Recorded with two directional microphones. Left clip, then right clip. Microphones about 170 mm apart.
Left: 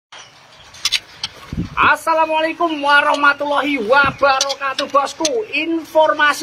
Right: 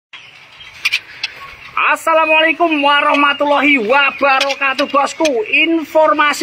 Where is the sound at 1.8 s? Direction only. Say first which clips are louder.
Right 1 dB; 15° right (ahead or behind).